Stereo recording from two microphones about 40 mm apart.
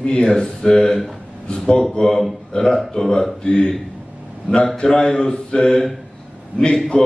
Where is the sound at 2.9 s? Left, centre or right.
Centre.